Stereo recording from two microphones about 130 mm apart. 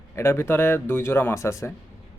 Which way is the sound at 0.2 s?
20° left (ahead or behind).